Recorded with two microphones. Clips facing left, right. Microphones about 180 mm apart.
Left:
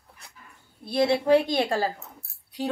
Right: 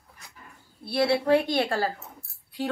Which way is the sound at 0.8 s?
15° left (ahead or behind).